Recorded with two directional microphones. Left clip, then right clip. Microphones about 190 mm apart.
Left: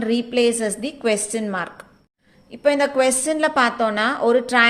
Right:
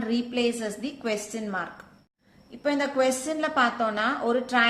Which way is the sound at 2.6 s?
45° left (ahead or behind).